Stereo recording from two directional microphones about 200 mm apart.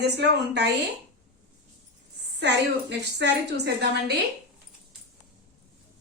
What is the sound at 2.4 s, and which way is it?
A woman's voice, 60° right (ahead or behind).